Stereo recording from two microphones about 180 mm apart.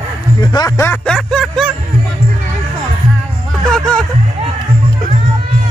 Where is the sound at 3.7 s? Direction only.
5° left (ahead or behind).